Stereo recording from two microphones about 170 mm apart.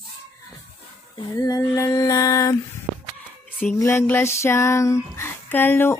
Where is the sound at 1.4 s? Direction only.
20° left (ahead or behind).